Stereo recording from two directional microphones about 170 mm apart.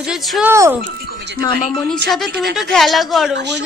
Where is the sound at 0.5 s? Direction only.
15° right (ahead or behind).